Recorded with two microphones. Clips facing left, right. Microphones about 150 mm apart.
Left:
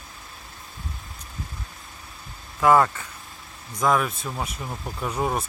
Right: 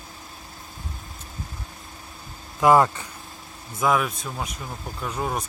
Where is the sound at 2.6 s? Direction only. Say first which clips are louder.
Right 1 dB; 20° right (ahead or behind).